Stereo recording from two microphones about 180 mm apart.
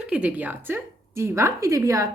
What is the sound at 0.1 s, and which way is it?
A woman's voice, 5° right (ahead or behind).